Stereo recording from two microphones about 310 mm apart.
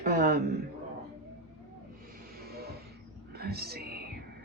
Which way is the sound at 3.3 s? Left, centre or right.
Right.